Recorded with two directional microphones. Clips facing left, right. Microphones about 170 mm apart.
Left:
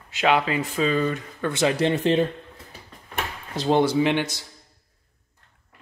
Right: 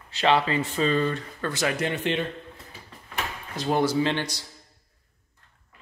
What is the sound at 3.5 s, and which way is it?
Speech, 25° left (ahead or behind).